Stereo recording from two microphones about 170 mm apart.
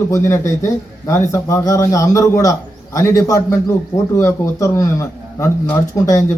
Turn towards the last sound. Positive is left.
turn(degrees=20)  # may be behind; listen again after turning